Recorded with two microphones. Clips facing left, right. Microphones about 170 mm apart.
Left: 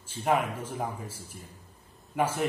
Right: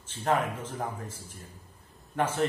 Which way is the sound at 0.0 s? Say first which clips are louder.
Left 1 dB; 10° left (ahead or behind).